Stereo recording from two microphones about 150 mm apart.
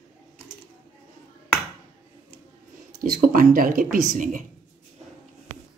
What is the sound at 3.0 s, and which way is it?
Speech, 70° right (ahead or behind).